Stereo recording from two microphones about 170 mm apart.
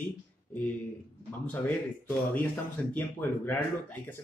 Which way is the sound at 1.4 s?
10° left (ahead or behind).